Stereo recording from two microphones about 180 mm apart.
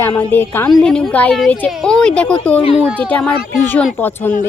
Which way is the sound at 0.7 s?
Centre (ahead or behind).